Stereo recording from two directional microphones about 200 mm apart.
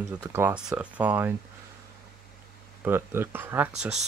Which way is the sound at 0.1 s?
10° right (ahead or behind).